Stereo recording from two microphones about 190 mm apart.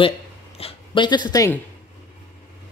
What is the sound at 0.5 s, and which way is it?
Speech, 30° left (ahead or behind).